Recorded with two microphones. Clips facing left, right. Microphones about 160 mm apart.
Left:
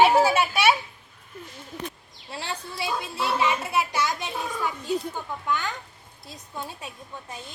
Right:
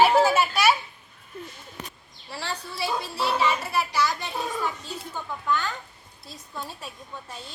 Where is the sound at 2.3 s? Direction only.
20° left (ahead or behind).